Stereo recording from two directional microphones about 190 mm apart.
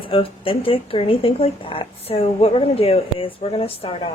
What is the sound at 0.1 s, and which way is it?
Speech, 30° left (ahead or behind).